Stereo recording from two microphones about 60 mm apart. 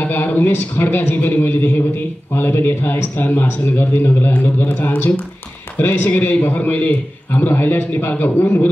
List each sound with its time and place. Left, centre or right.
0.0 s a man's voice: left